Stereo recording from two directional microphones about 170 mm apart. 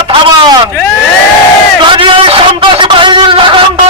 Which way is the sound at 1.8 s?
30° right (ahead or behind).